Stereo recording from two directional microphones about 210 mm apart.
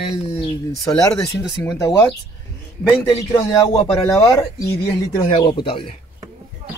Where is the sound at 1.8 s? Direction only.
15° left (ahead or behind).